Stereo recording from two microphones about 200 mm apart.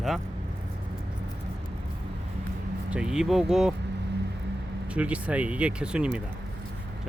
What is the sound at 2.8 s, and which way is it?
Speech, 5° right (ahead or behind).